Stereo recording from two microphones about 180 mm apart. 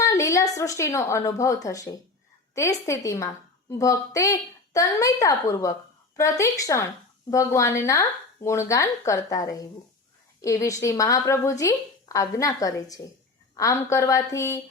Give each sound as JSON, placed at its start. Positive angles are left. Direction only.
{"t": 0.0, "sound": "a woman's voice", "side_deg": 15}